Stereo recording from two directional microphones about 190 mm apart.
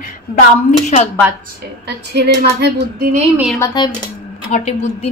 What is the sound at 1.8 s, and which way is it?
Speech, 60° right (ahead or behind).